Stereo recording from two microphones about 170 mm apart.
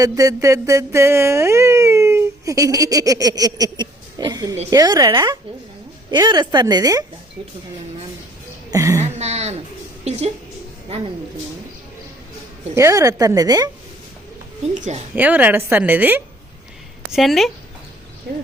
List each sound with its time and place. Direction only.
0.0 s a sound: 20° right (ahead or behind)
4.7 s a woman's voice: 20° right (ahead or behind)
8.7 s speech: 20° right (ahead or behind)
9.0 s speech: 40° right (ahead or behind)
10.0 s a sound: 40° right (ahead or behind)
12.7 s a woman's voice: 20° right (ahead or behind)
14.8 s a woman's voice: 45° right (ahead or behind)
15.1 s a woman's voice: 10° right (ahead or behind)
17.1 s a woman's voice: centre (ahead or behind)